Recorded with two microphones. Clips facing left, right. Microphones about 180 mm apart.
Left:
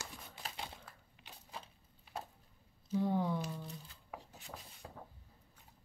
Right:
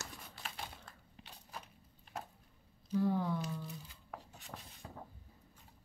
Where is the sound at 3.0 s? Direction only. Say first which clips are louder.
Even; 20° left (ahead or behind).